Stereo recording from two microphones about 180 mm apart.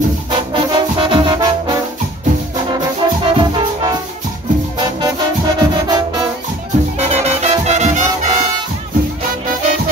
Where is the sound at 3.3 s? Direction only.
25° right (ahead or behind).